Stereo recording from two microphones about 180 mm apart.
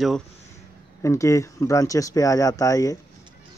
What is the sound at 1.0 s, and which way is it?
Speech, 15° left (ahead or behind).